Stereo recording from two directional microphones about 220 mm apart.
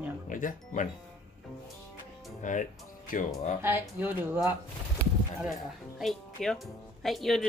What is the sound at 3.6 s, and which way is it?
Speech, 10° right (ahead or behind).